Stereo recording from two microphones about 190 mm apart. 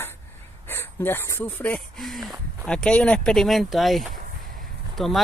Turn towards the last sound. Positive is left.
turn(degrees=0)  # may be behind; listen again after turning